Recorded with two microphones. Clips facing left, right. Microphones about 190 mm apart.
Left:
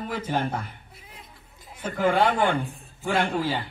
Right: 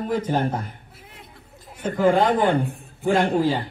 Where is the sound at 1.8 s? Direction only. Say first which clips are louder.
Right 4 dB; 30° right (ahead or behind).